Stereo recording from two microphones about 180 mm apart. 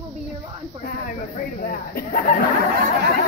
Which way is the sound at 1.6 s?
50° left (ahead or behind).